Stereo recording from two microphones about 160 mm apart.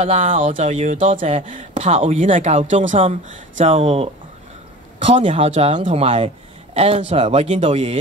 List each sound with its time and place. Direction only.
0.0 s speech: 50° right (ahead or behind)
1.7 s speech: 40° right (ahead or behind)
3.7 s speech: 40° right (ahead or behind)